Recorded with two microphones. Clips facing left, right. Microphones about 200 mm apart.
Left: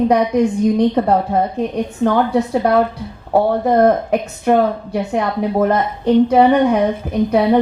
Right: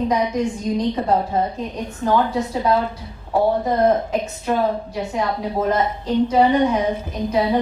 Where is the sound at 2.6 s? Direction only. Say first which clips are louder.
Left 5 dB; 60° left (ahead or behind).